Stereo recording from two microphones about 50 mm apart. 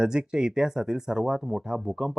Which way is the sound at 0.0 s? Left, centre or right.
Centre.